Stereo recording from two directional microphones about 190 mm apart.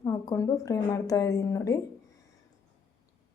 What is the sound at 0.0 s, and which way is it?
Speech, 15° left (ahead or behind).